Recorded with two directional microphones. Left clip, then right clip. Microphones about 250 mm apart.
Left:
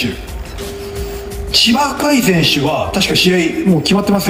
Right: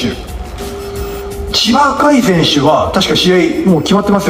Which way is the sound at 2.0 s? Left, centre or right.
Centre.